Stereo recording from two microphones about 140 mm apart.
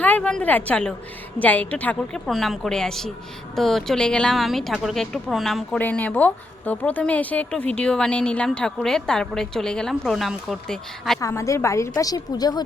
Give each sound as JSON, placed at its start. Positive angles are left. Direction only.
{"t": 0.0, "sound": "a woman's voice", "side_deg": 10}
{"t": 11.2, "sound": "a woman's voice", "side_deg": 20}